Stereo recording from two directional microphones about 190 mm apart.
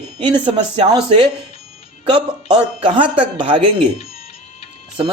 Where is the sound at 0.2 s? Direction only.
25° right (ahead or behind).